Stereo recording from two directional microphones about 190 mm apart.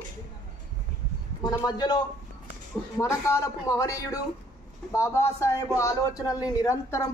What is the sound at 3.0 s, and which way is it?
Speech, 15° left (ahead or behind).